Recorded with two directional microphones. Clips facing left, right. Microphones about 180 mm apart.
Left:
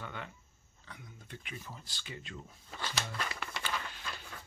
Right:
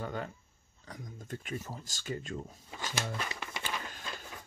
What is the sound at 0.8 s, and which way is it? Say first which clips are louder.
Speech: right 7 dB; 45° right (ahead or behind).